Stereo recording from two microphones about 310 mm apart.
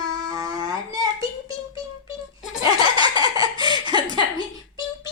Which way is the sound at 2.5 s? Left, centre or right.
Centre.